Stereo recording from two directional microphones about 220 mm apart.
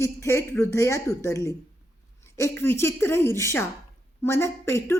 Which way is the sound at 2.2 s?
10° left (ahead or behind).